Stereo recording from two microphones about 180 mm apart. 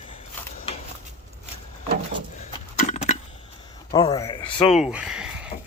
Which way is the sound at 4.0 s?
20° left (ahead or behind).